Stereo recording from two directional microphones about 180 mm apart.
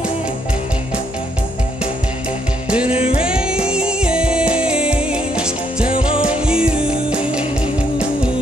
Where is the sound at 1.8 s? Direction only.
5° right (ahead or behind).